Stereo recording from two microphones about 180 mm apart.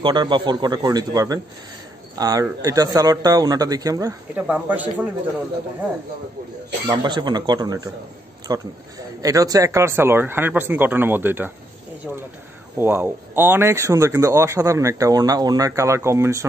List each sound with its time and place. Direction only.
0.0 s speech: 25° right (ahead or behind); by 5.1 s 10° right (ahead or behind)
6.9 s speech: 25° right (ahead or behind)
12.7 s speech: 10° right (ahead or behind)